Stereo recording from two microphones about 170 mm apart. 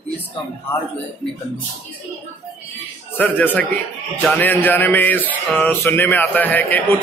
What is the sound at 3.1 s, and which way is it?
A man's voice, 10° left (ahead or behind).